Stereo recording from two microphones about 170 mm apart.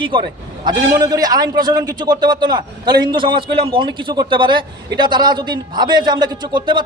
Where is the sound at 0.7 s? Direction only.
25° right (ahead or behind).